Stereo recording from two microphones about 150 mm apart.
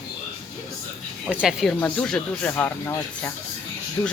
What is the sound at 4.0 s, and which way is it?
Speech, 25° left (ahead or behind).